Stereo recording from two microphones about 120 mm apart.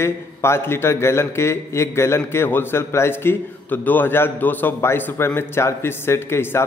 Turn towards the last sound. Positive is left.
turn(degrees=20)  # may be behind; listen again after turning